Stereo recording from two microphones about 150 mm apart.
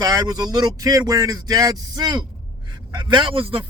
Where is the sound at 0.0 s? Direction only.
25° right (ahead or behind).